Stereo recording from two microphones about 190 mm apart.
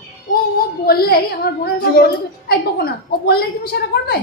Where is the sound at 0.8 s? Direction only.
55° left (ahead or behind).